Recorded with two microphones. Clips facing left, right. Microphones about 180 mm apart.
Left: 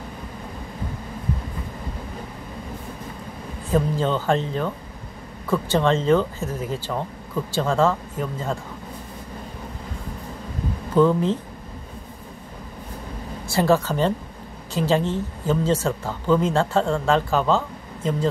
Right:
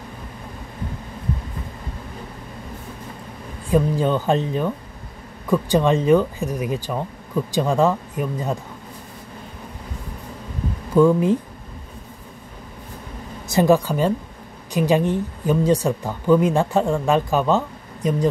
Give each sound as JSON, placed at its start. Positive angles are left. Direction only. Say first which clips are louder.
{"t": 3.7, "sound": "a woman's voice", "louder": "right 3 dB", "side_deg": -15}
{"t": 11.0, "sound": "a woman's voice", "louder": "right 3 dB", "side_deg": -10}
{"t": 13.5, "sound": "a woman's voice", "louder": "right 3 dB", "side_deg": -15}